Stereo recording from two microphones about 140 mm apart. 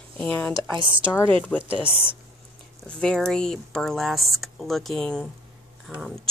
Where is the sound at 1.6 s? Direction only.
10° right (ahead or behind).